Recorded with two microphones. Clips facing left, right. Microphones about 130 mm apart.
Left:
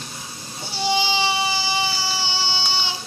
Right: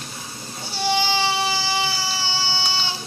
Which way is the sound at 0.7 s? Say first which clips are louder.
Even; 15° left (ahead or behind).